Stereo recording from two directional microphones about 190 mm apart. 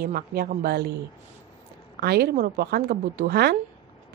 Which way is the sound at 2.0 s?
55° right (ahead or behind).